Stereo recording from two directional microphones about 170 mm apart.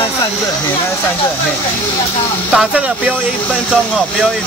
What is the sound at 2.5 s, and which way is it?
Speech, 5° right (ahead or behind).